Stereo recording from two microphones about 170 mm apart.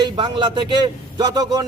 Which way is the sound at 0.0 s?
25° right (ahead or behind).